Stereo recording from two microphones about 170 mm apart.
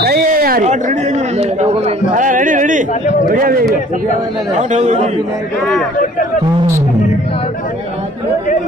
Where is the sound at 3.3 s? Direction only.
60° right (ahead or behind).